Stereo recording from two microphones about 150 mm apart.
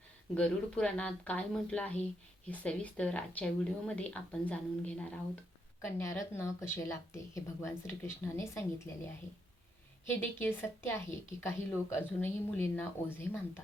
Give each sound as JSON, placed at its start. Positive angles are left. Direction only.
{"t": 0.3, "sound": "a woman's voice", "side_deg": 5}
{"t": 5.8, "sound": "speech", "side_deg": 20}
{"t": 10.1, "sound": "a woman's voice", "side_deg": 15}